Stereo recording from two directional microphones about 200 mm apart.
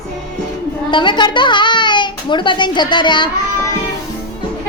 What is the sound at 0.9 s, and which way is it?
A child's voice, 25° left (ahead or behind).